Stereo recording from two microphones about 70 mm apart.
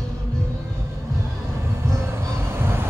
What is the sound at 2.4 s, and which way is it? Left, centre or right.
Vehicle, right.